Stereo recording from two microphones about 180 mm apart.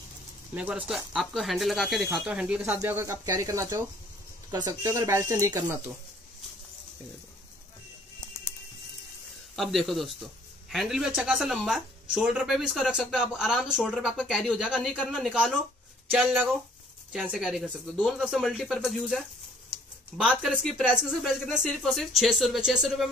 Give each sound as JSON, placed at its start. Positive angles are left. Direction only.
{"t": 0.6, "sound": "a woman's voice", "side_deg": -5}
{"t": 9.6, "sound": "a woman's voice", "side_deg": 0}